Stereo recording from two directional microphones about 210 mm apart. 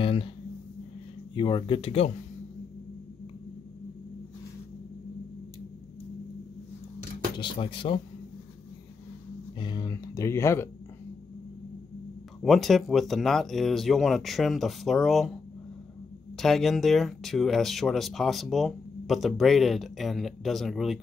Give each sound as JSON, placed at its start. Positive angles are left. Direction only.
{"t": 0.0, "sound": "a sound", "side_deg": 25}
{"t": 1.3, "sound": "speech", "side_deg": 20}
{"t": 7.3, "sound": "speech", "side_deg": 25}
{"t": 9.6, "sound": "speech", "side_deg": 20}
{"t": 12.4, "sound": "speech", "side_deg": 0}
{"t": 16.3, "sound": "speech", "side_deg": 0}